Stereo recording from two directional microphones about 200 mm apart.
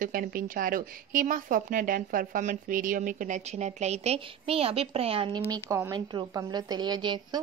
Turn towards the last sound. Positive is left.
turn(degrees=-20)  # may be behind; listen again after turning